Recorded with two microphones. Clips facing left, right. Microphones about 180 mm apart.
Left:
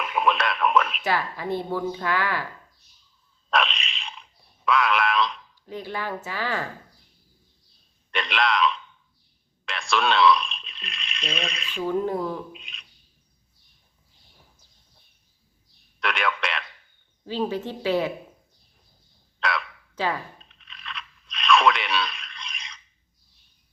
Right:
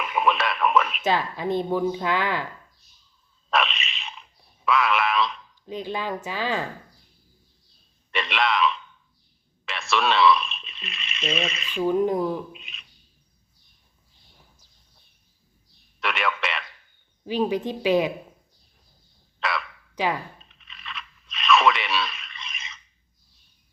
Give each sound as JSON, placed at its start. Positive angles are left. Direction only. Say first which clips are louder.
{"t": 0.0, "sound": "radio", "louder": "even", "side_deg": 0}
{"t": 1.0, "sound": "speech", "louder": "right 2 dB", "side_deg": -20}
{"t": 3.5, "sound": "a sound", "louder": "even", "side_deg": 0}
{"t": 5.6, "sound": "a woman's voice", "louder": "right 2 dB", "side_deg": -20}
{"t": 8.1, "sound": "a man's voice", "louder": "even", "side_deg": 0}
{"t": 11.8, "sound": "a woman's voice", "louder": "right 3 dB", "side_deg": -15}
{"t": 12.5, "sound": "a man's voice", "louder": "left 1 dB", "side_deg": 0}
{"t": 16.0, "sound": "a man's voice", "louder": "even", "side_deg": 0}
{"t": 17.2, "sound": "a woman's voice", "louder": "right 3 dB", "side_deg": -15}
{"t": 19.4, "sound": "a sound", "louder": "left 1 dB", "side_deg": 0}
{"t": 20.0, "sound": "a woman's voice", "louder": "right 1 dB", "side_deg": -15}
{"t": 20.4, "sound": "crunch", "louder": "even", "side_deg": 0}